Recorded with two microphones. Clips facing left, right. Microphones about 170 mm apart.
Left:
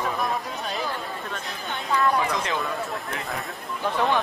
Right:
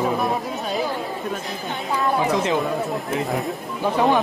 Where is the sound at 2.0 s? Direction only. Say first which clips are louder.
Right 3 dB; 20° right (ahead or behind).